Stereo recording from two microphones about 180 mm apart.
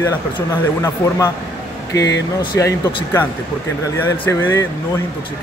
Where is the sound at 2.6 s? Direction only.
15° left (ahead or behind).